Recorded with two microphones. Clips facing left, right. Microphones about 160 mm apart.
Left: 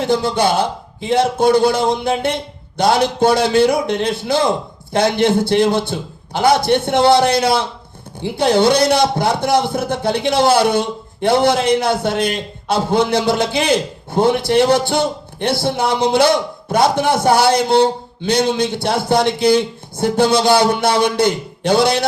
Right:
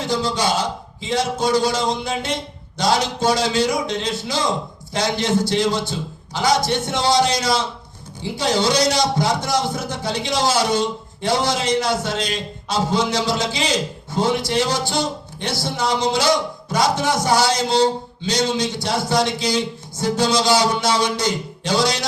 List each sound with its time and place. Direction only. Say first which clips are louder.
0.0 s a man's voice: left 5 dB; 55° left (ahead or behind)